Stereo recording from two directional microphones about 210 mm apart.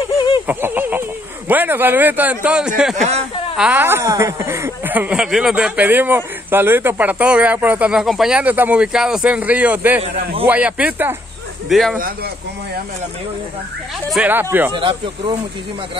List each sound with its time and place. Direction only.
0.5 s speech: 10° right (ahead or behind)
3.0 s speech: 30° right (ahead or behind)
3.5 s speech: 5° right (ahead or behind)
14.1 s speech: 10° right (ahead or behind)
14.7 s speech: 25° right (ahead or behind)